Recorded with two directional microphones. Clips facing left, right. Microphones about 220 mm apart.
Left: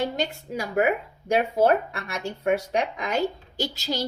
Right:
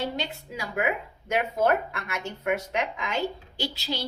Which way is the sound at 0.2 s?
45° left (ahead or behind).